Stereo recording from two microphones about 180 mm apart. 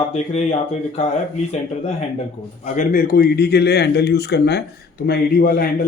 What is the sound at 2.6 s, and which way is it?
A man's voice, 45° left (ahead or behind).